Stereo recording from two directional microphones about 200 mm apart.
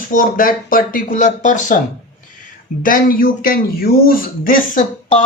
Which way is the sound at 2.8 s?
45° left (ahead or behind).